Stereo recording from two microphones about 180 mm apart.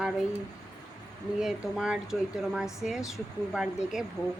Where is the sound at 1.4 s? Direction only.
5° right (ahead or behind).